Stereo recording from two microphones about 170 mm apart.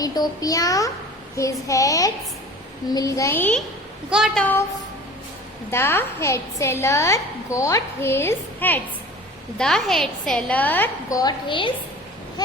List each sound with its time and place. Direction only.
0.0 s a child's voice: 20° left (ahead or behind)
4.1 s a woman's voice: 5° right (ahead or behind)
5.7 s a woman's voice: 15° left (ahead or behind)
11.2 s a child's voice: 25° left (ahead or behind)